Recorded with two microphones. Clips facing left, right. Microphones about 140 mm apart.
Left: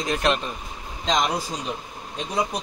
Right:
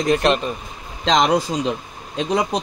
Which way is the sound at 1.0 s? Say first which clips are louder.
Right 7 dB; 90° right.